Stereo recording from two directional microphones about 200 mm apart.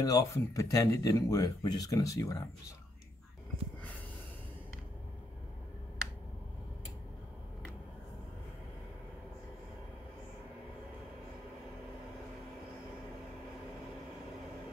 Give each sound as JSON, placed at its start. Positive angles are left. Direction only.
{"t": 0.0, "sound": "speech", "side_deg": 15}